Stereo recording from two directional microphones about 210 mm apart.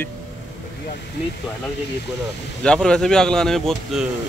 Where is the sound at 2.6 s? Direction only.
5° left (ahead or behind).